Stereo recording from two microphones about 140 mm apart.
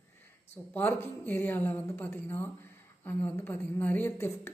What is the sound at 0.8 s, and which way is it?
Speech, 15° left (ahead or behind).